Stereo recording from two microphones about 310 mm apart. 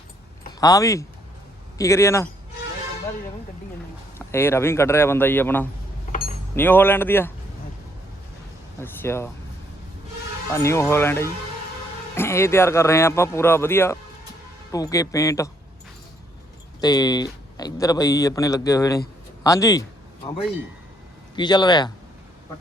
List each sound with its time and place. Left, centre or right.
0.6 s a man's voice: centre
4.3 s a man's voice: centre
6.1 s a sound: left
6.6 s a man's voice: centre
8.8 s a man's voice: centre
10.5 s a man's voice: centre
16.8 s a man's voice: centre
21.3 s a man's voice: centre